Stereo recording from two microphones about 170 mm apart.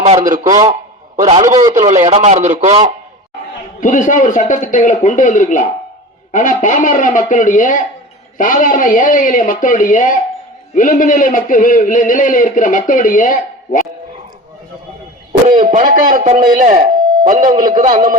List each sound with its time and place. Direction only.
0.0 s a man's voice: 45° right (ahead or behind)
3.8 s a man's voice: 50° left (ahead or behind)
15.5 s a man's voice: 50° right (ahead or behind)